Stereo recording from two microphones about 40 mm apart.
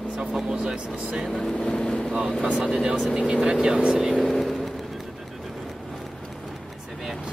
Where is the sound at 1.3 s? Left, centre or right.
Centre.